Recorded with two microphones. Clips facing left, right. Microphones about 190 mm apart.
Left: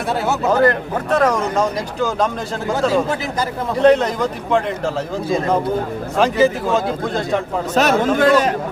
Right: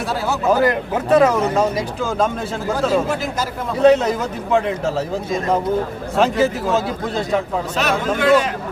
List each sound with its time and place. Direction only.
0.5 s a man's voice: 5° right (ahead or behind)
3.8 s a man's voice: 5° right (ahead or behind)
6.1 s a man's voice: centre (ahead or behind)
7.8 s a man's voice: 40° left (ahead or behind)